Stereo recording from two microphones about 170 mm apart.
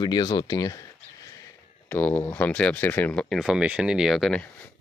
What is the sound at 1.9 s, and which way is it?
Speech, 10° left (ahead or behind).